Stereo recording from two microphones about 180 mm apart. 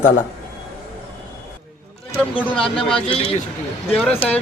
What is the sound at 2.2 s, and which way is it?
Speech, 5° left (ahead or behind).